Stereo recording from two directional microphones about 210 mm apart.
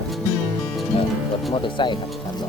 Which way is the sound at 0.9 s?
25° left (ahead or behind).